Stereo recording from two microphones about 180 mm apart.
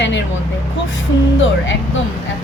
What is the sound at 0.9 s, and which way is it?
Speech, 90° left.